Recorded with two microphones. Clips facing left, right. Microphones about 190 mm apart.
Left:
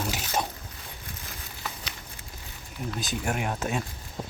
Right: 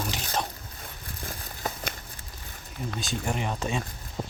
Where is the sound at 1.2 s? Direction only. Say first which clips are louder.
Right 6 dB; 50° right (ahead or behind).